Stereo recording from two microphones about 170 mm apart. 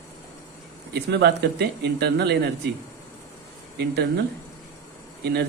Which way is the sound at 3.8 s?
70° right (ahead or behind).